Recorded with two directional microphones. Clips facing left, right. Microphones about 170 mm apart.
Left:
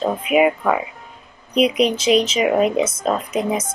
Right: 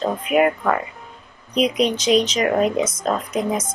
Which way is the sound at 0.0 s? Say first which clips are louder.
Left 2 dB; 5° left (ahead or behind).